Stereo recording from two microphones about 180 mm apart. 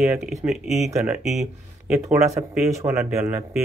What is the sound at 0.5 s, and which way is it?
Speech, centre (ahead or behind).